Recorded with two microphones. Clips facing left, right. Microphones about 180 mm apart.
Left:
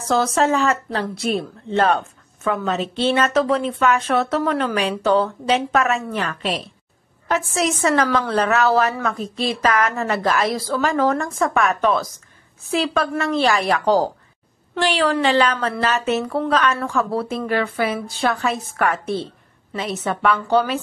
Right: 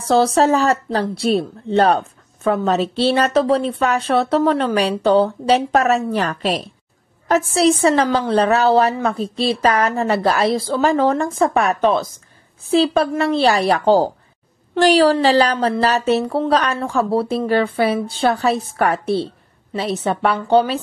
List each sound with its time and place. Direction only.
0.1 s speech: 30° right (ahead or behind)